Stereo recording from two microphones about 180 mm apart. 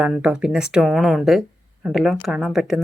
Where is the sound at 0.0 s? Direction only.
5° right (ahead or behind).